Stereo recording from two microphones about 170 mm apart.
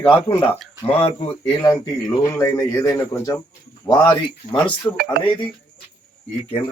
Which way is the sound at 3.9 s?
30° left (ahead or behind).